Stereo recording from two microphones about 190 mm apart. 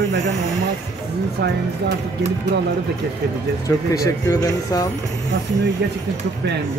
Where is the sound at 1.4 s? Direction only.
65° right (ahead or behind).